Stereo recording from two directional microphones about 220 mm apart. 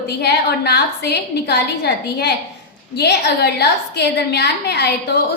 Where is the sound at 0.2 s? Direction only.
50° left (ahead or behind).